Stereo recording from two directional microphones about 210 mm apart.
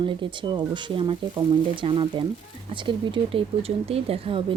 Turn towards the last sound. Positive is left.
turn(degrees=-25)  # may be behind; listen again after turning